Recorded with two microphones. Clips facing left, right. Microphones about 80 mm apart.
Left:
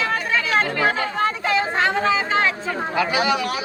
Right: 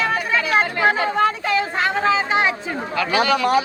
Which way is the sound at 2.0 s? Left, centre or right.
Centre.